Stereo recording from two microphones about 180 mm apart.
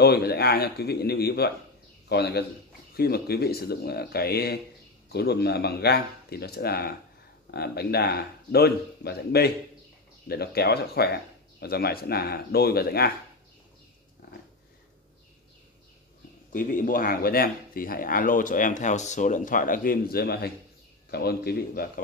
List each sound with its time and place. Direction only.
0.0 s a man's voice: 60° left (ahead or behind)
16.5 s speech: 50° left (ahead or behind)